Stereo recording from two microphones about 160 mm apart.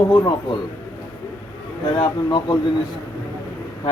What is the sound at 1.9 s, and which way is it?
Speech, 25° left (ahead or behind).